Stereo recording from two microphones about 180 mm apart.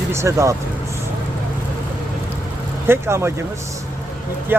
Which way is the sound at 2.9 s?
15° right (ahead or behind).